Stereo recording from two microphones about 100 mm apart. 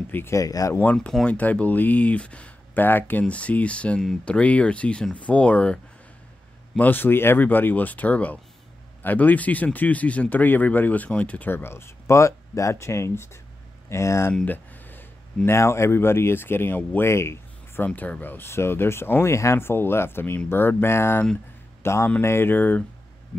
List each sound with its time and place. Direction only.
0.1 s speech: 25° left (ahead or behind)
0.9 s speech: 5° left (ahead or behind)
6.8 s speech: 20° left (ahead or behind)
14.3 s a sound: 15° left (ahead or behind)
15.4 s speech: 25° left (ahead or behind)
17.8 s speech: 15° left (ahead or behind)